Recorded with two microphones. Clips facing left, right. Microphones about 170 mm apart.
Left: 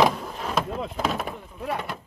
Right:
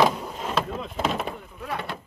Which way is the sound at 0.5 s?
10° left (ahead or behind).